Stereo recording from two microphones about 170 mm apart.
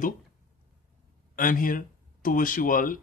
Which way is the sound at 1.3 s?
55° left (ahead or behind).